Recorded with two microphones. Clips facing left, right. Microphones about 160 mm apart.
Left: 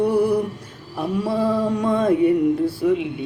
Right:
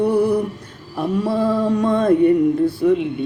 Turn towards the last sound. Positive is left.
turn(degrees=5)  # may be behind; listen again after turning